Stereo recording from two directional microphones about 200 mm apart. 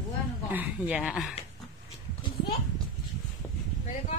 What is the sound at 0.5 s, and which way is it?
Speech, 5° right (ahead or behind).